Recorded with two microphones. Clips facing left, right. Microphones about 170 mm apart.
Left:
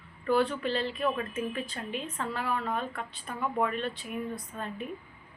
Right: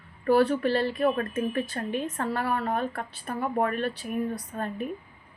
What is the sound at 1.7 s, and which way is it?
Speech, 50° right (ahead or behind).